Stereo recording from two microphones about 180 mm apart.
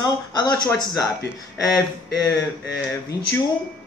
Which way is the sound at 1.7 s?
20° left (ahead or behind).